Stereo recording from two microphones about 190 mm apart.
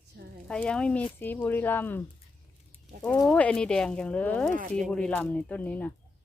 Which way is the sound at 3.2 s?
5° left (ahead or behind).